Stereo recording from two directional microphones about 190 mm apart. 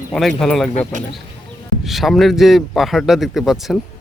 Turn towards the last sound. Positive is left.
turn(degrees=0)  # may be behind; listen again after turning